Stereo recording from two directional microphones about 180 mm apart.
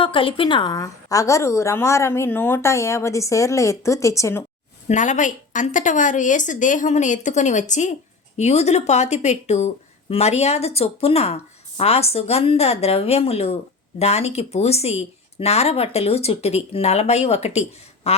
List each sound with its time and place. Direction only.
0.0 s a woman's voice: 30° left (ahead or behind)
4.9 s a woman's voice: 45° left (ahead or behind)